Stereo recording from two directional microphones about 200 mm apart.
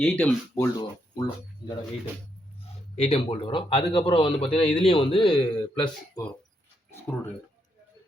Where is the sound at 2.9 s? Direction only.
30° left (ahead or behind).